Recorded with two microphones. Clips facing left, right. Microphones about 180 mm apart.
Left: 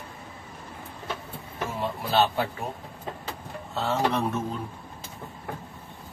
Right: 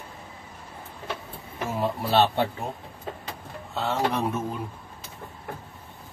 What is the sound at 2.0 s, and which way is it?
Speech, 30° right (ahead or behind).